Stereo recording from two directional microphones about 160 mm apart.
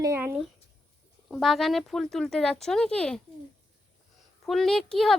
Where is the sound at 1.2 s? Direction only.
Centre (ahead or behind).